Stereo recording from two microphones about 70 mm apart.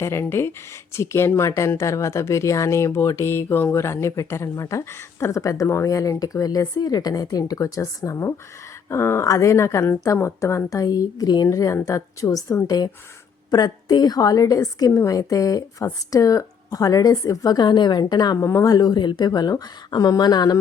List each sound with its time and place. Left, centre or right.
0.0 s speech: left
5.6 s speech: left
5.9 s a woman's voice: left
10.8 s speech: left
11.4 s a woman's voice: left
13.5 s a woman's voice: left
18.3 s speech: left